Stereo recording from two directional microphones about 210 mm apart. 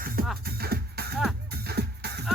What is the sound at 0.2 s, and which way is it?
Music, 45° right (ahead or behind).